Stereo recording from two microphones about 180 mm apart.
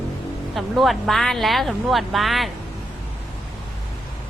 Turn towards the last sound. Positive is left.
turn(degrees=0)  # may be behind; listen again after turning